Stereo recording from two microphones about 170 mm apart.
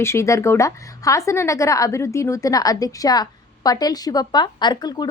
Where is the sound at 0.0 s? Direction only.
15° left (ahead or behind).